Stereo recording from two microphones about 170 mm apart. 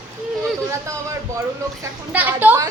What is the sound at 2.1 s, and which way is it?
Speech, 10° right (ahead or behind).